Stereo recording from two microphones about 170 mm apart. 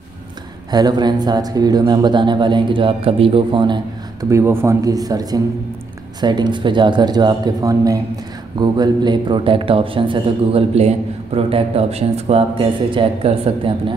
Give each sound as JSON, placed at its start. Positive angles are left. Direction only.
{"t": 0.7, "sound": "a man's voice", "side_deg": -25}